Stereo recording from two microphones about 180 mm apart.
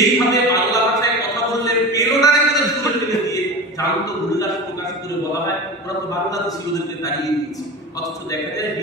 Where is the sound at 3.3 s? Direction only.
20° left (ahead or behind).